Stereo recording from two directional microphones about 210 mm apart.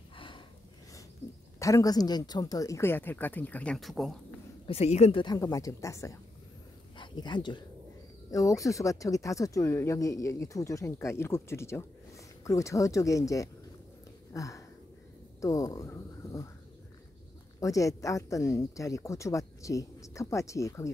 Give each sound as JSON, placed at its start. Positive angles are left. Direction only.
{"t": 0.1, "sound": "gasp", "side_deg": 25}
{"t": 1.6, "sound": "speech", "side_deg": 15}
{"t": 4.6, "sound": "speech", "side_deg": 30}
{"t": 17.6, "sound": "speech", "side_deg": 15}